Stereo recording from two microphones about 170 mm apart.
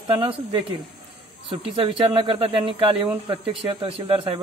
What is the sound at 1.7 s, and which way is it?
Speech, 30° right (ahead or behind).